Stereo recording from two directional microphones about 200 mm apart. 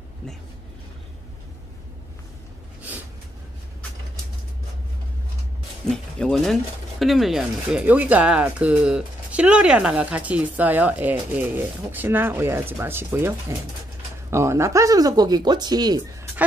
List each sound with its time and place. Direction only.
5.9 s speech: centre (ahead or behind); by 16.3 s 20° right (ahead or behind)